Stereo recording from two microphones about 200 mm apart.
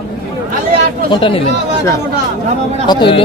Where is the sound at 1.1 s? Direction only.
25° left (ahead or behind).